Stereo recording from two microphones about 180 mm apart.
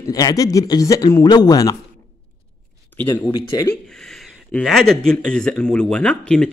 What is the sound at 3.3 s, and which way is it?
Speech, 20° left (ahead or behind).